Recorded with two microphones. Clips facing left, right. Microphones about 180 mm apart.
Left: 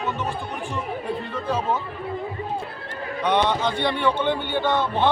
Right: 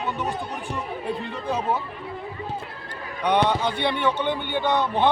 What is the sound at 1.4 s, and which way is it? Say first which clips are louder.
Speech: left 1 dB; 15° right (ahead or behind).